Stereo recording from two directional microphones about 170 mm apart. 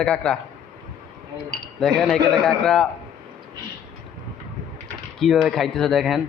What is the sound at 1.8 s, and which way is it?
A man's voice, centre (ahead or behind).